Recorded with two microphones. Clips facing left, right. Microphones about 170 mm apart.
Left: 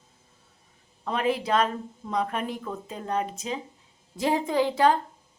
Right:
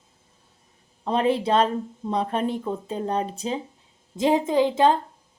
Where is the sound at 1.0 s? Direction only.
30° right (ahead or behind).